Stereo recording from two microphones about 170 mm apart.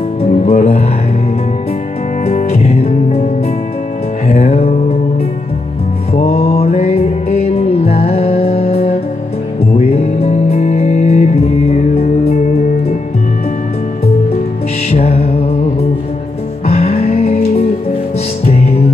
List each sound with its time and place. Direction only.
0.2 s music: 40° left (ahead or behind)
2.2 s music: 40° left (ahead or behind)
4.3 s music: 35° left (ahead or behind)
6.1 s music: 35° left (ahead or behind)
14.9 s music: 35° left (ahead or behind)